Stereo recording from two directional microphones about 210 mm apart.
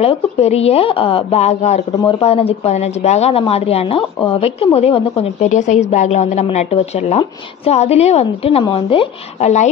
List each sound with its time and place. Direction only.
0.0 s a woman's voice: 30° left (ahead or behind)